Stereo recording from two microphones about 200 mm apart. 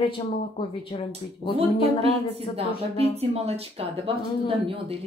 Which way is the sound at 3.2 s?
30° right (ahead or behind).